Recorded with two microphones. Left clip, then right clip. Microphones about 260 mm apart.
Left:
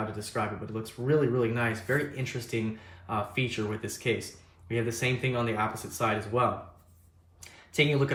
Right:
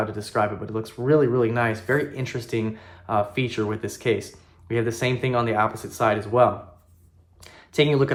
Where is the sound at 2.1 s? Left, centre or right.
Centre.